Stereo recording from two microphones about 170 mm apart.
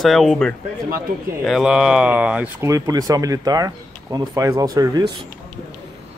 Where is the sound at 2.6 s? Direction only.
20° right (ahead or behind).